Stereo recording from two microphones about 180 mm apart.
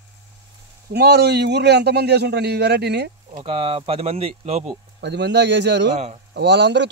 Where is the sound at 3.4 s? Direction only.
30° right (ahead or behind).